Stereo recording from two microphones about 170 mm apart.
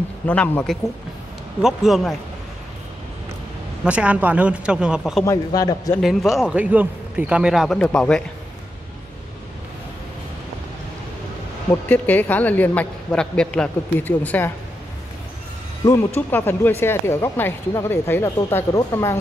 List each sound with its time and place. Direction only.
0.3 s a man's voice: 10° left (ahead or behind)
3.8 s speech: 5° right (ahead or behind)
5.2 s a man's voice: 20° left (ahead or behind)
5.9 s a man's voice: centre (ahead or behind)
11.7 s speech: 10° left (ahead or behind)
15.8 s speech: 20° left (ahead or behind)